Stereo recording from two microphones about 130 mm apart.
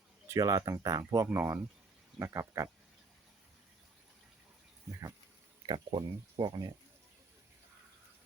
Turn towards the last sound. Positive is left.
turn(degrees=-30)  # may be behind; listen again after turning